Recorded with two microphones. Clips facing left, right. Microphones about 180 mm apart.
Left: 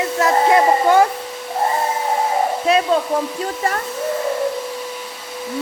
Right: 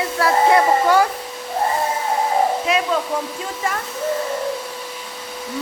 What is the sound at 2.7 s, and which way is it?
Speech, 30° left (ahead or behind).